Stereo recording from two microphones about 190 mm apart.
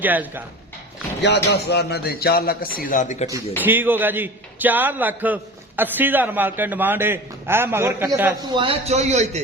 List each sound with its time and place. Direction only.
0.0 s a man's voice: 10° right (ahead or behind)
1.2 s a man's voice: 65° left (ahead or behind); by 3.2 s 40° left (ahead or behind)
3.6 s a man's voice: 10° right (ahead or behind)
8.4 s a man's voice: 25° right (ahead or behind)